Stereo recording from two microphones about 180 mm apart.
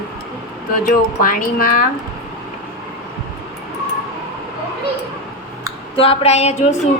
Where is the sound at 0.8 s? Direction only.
50° left (ahead or behind).